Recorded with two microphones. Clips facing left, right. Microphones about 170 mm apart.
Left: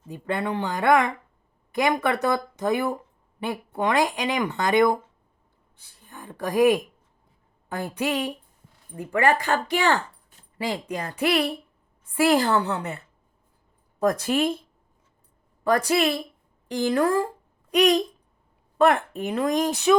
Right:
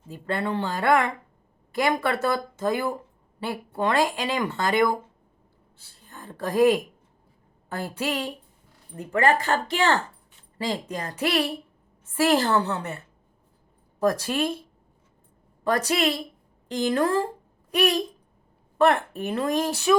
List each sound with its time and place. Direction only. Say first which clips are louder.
0.1 s speech: even; 15° left (ahead or behind)
15.6 s speech: left 2 dB; 15° left (ahead or behind)